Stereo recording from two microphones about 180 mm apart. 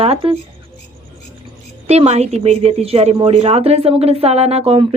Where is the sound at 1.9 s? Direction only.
35° right (ahead or behind).